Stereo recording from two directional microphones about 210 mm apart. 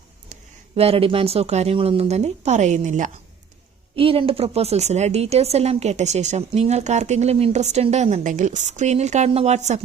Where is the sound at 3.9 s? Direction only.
25° right (ahead or behind).